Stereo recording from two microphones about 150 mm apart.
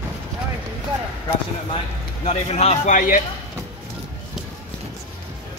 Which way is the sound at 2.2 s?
45° left (ahead or behind).